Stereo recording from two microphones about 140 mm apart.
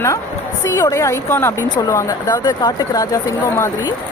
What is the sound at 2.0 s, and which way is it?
Speech, 30° left (ahead or behind).